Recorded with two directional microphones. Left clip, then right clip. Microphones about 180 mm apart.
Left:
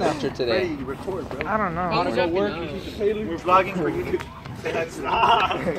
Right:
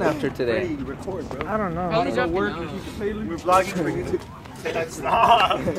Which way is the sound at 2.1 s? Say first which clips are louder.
Left 1 dB; 60° right (ahead or behind).